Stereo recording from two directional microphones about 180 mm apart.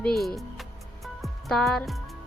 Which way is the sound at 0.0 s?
Centre (ahead or behind).